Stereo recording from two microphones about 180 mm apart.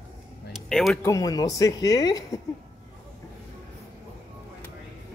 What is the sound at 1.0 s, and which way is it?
A woman's voice, 20° left (ahead or behind).